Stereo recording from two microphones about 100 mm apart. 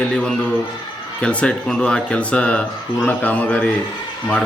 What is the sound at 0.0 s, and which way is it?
A man's voice, 10° left (ahead or behind).